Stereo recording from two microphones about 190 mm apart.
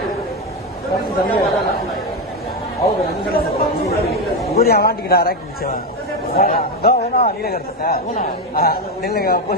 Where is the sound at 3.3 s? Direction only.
55° left (ahead or behind).